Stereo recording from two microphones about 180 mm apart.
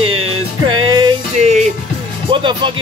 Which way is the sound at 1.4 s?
40° right (ahead or behind).